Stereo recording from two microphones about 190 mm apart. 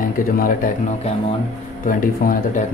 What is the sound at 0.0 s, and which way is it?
Speech, 50° left (ahead or behind).